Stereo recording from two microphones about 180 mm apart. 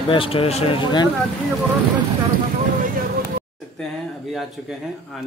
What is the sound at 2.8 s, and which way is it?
Vehicle, 55° right (ahead or behind).